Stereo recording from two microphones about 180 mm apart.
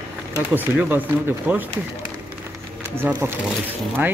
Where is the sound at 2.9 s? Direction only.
15° right (ahead or behind).